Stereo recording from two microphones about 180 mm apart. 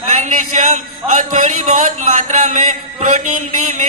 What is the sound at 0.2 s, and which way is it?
A man's voice, 45° right (ahead or behind).